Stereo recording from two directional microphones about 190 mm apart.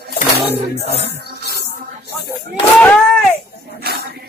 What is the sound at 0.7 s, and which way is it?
Music, 55° left (ahead or behind).